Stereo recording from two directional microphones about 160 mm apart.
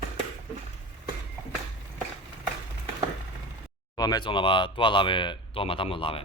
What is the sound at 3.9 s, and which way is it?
Speech, 25° left (ahead or behind).